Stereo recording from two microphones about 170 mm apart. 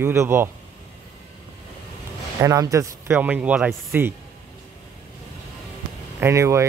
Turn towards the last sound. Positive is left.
turn(degrees=-15)  # may be behind; listen again after turning